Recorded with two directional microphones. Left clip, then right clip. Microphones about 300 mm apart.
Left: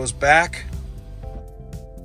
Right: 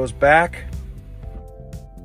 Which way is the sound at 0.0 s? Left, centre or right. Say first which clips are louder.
Right 2 dB; centre.